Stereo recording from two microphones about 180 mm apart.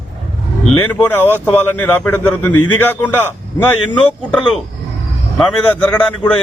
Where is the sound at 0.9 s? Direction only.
10° left (ahead or behind).